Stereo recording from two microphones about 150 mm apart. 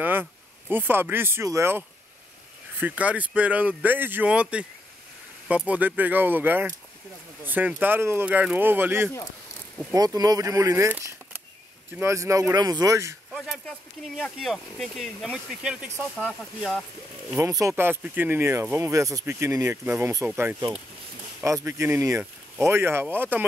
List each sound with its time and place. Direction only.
0.0 s speech: 15° right (ahead or behind)
9.9 s speech: 25° right (ahead or behind)
13.3 s speech: centre (ahead or behind)
16.3 s speech: 5° left (ahead or behind)
17.4 s speech: 20° right (ahead or behind)